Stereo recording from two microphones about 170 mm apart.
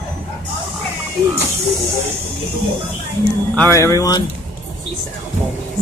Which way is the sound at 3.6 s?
15° left (ahead or behind).